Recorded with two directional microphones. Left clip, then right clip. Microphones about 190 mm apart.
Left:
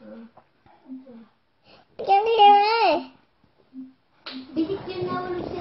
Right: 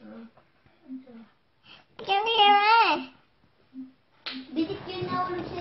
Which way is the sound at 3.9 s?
Centre (ahead or behind).